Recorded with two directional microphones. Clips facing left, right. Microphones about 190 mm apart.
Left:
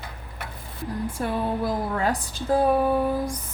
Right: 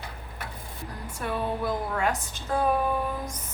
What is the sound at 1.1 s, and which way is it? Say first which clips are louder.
A woman's voice: left 1 dB; 35° left (ahead or behind).